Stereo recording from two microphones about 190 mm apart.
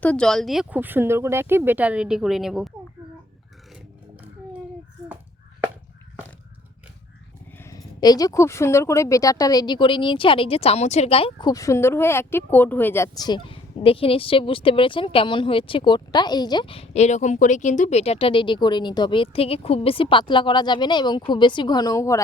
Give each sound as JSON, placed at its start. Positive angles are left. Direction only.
{"t": 0.0, "sound": "speech", "side_deg": 5}
{"t": 7.6, "sound": "speech", "side_deg": 20}